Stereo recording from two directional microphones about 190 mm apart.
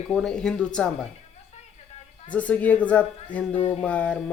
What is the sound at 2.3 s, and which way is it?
Speech, 5° left (ahead or behind).